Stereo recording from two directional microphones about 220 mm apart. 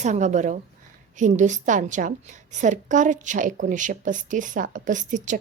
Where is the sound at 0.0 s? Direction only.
30° right (ahead or behind).